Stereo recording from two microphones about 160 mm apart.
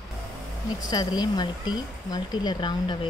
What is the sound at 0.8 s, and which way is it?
Speech, 25° left (ahead or behind).